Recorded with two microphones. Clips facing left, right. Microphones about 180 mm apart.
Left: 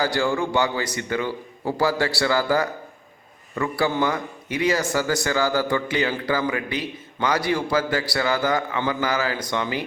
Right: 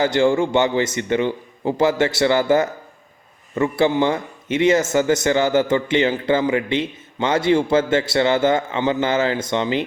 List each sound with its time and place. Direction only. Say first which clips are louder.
0.0 s a man's voice: right 6 dB; 20° right (ahead or behind)